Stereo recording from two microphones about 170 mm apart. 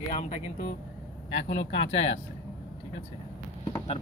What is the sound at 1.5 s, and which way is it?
Speech, 40° left (ahead or behind).